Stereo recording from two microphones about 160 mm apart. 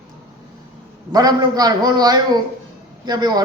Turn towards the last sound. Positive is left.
turn(degrees=-25)  # may be behind; listen again after turning